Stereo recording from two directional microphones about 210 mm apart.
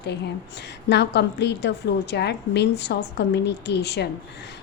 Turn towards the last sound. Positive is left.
turn(degrees=55)  # may be behind; listen again after turning